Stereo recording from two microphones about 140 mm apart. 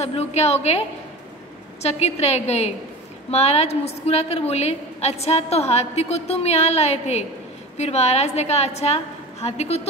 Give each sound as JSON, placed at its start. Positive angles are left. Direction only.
{"t": 0.0, "sound": "a woman's voice", "side_deg": 50}
{"t": 1.8, "sound": "a woman's voice", "side_deg": 50}